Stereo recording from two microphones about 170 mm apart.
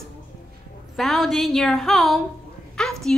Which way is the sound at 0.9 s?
Centre (ahead or behind).